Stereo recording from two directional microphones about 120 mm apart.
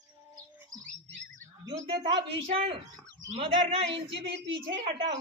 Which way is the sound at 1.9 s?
50° right (ahead or behind).